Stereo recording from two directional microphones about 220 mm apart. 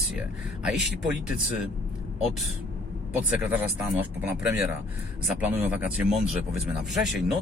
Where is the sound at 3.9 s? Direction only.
5° right (ahead or behind).